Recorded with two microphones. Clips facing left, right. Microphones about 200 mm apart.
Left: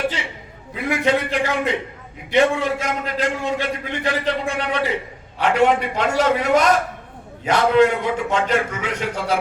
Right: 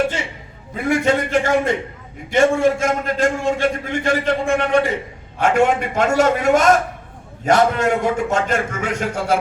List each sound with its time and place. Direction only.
0.8 s a man's voice: 45° right (ahead or behind)